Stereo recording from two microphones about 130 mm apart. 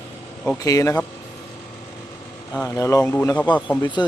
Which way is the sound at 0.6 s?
25° left (ahead or behind).